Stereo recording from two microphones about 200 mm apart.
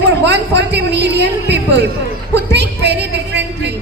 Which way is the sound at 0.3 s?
60° right (ahead or behind).